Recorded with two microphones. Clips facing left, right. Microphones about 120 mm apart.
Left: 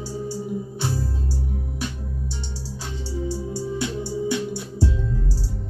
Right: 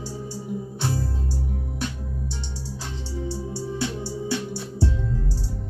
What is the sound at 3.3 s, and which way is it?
Music, 15° left (ahead or behind).